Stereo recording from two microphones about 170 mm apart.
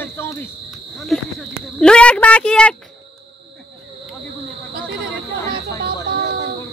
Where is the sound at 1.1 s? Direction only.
Centre (ahead or behind).